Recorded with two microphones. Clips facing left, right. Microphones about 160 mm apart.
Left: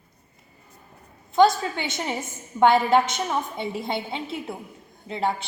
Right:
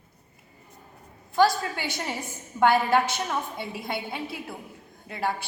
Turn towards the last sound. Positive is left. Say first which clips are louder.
# left 3 dB
turn(degrees=25)  # may be behind; listen again after turning